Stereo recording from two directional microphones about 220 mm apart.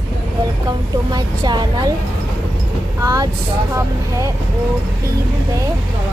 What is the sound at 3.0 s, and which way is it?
Speech, 15° right (ahead or behind).